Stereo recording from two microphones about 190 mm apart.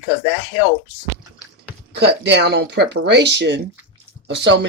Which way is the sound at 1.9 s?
65° right (ahead or behind).